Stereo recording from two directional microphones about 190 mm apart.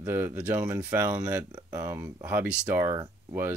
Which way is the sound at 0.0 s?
10° right (ahead or behind).